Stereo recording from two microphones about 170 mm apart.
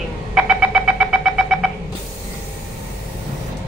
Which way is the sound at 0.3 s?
5° right (ahead or behind).